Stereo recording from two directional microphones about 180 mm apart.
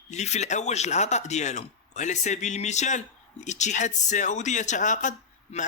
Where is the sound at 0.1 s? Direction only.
40° left (ahead or behind).